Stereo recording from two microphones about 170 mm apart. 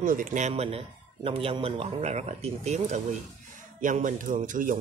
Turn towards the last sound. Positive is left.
turn(degrees=-50)  # may be behind; listen again after turning